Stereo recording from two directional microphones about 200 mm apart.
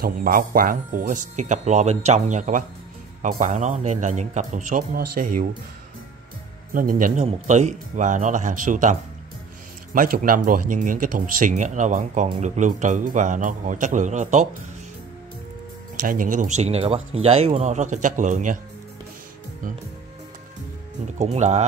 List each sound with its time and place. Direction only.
0.0 s speech: 45° right (ahead or behind)
6.7 s speech: 45° right (ahead or behind)
9.9 s speech: 45° right (ahead or behind)
16.0 s speech: 40° right (ahead or behind)
21.2 s speech: 35° right (ahead or behind)